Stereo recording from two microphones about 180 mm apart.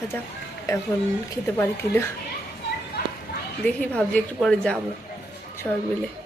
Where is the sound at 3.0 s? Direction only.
60° left (ahead or behind).